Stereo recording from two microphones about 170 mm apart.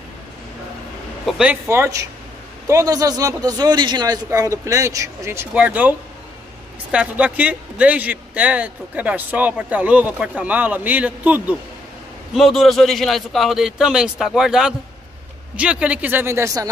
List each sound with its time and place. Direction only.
1.2 s a man's voice: 10° right (ahead or behind)